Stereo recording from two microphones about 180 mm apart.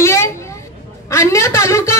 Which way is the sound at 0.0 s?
15° left (ahead or behind).